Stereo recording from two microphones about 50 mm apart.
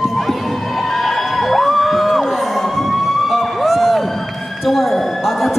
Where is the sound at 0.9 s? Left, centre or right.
Centre.